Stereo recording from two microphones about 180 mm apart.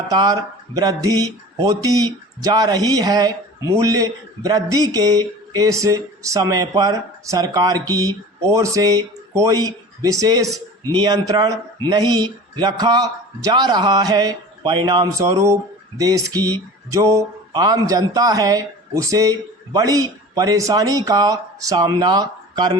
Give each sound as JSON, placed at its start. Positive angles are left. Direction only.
{"t": 0.1, "sound": "speech", "side_deg": -20}